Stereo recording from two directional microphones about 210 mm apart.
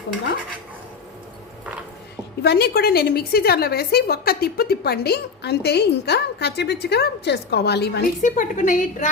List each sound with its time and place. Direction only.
2.4 s a woman's voice: 50° left (ahead or behind)
8.2 s a woman's voice: 35° left (ahead or behind)